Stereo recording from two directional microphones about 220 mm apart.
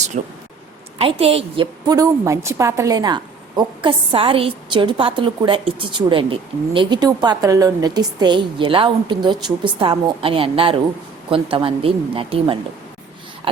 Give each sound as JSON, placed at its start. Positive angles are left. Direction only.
{"t": 0.1, "sound": "a woman's voice", "side_deg": -35}